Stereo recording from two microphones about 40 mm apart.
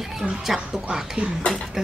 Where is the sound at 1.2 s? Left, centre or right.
Right.